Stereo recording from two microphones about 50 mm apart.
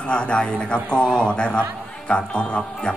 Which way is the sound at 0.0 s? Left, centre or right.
Left.